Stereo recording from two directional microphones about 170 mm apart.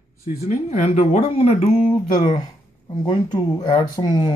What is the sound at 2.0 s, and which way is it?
Speech, 25° left (ahead or behind).